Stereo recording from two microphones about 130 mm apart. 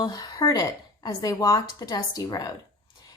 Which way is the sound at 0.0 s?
30° left (ahead or behind).